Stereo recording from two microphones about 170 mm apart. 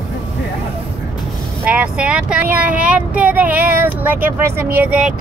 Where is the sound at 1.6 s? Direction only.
5° right (ahead or behind).